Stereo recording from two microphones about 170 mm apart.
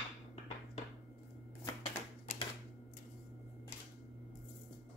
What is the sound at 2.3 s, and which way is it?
Typewriter, 45° left (ahead or behind).